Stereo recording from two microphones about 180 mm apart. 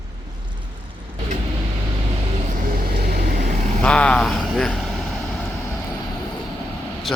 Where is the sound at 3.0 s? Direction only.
60° right (ahead or behind).